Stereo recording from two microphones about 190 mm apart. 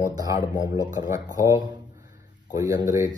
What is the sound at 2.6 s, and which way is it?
Speech, 20° right (ahead or behind).